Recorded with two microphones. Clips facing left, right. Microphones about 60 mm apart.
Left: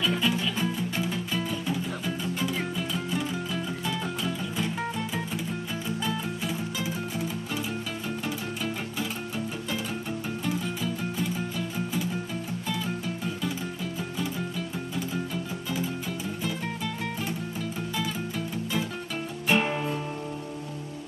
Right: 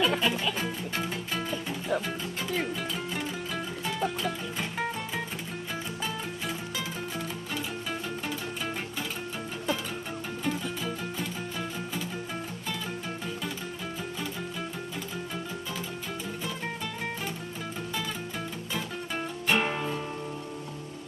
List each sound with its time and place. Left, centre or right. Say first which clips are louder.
0.0 s music: right 1 dB; right
19.5 s music: left 2 dB; centre